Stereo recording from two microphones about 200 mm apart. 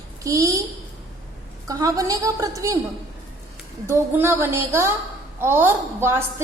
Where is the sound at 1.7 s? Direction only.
15° right (ahead or behind).